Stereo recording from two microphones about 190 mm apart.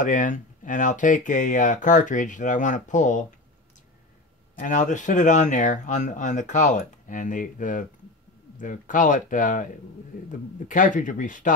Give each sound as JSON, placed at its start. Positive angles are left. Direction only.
{"t": 0.0, "sound": "speech", "side_deg": 40}
{"t": 4.6, "sound": "speech", "side_deg": 40}